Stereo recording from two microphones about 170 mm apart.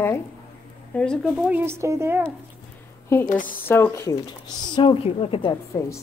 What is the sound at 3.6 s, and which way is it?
Speech, 15° left (ahead or behind).